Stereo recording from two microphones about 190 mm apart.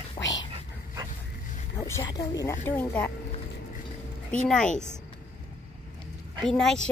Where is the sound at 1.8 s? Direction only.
15° left (ahead or behind).